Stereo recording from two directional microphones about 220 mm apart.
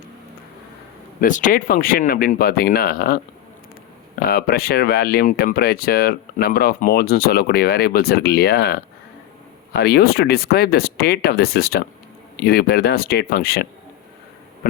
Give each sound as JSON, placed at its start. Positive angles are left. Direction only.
{"t": 1.2, "sound": "speech", "side_deg": 35}
{"t": 4.2, "sound": "speech", "side_deg": 45}